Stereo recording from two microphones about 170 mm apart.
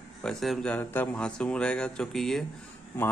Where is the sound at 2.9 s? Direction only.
10° left (ahead or behind).